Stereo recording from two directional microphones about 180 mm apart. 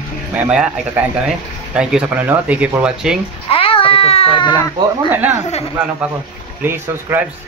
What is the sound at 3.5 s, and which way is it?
Speech, 30° left (ahead or behind).